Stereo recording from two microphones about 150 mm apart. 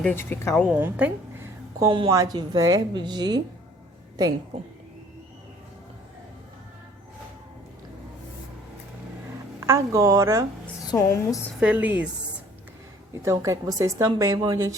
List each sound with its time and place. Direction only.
0.0 s speech: 15° left (ahead or behind)
0.7 s speech: 10° right (ahead or behind)
1.9 s a woman's voice: 35° right (ahead or behind)
9.6 s a woman's voice: 20° right (ahead or behind)
10.9 s speech: 20° left (ahead or behind)
11.6 s speech: 10° right (ahead or behind)
13.2 s a woman's voice: 20° right (ahead or behind)